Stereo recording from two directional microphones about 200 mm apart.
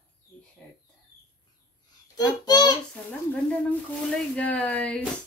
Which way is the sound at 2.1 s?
20° left (ahead or behind).